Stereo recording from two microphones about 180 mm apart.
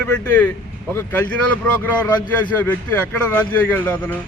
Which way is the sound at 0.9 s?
10° left (ahead or behind).